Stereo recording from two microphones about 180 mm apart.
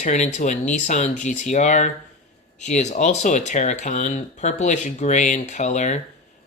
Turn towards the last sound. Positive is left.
turn(degrees=40)  # may be behind; listen again after turning